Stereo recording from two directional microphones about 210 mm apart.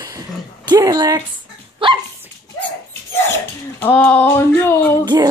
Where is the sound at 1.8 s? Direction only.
25° right (ahead or behind).